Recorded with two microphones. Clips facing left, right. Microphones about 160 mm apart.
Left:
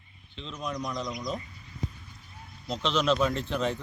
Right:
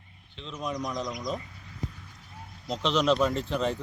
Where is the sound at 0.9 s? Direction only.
45° right (ahead or behind).